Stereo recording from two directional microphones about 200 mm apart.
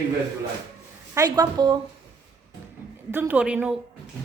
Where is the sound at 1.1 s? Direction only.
20° right (ahead or behind).